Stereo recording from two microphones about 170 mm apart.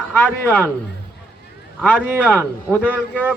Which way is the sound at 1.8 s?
5° left (ahead or behind).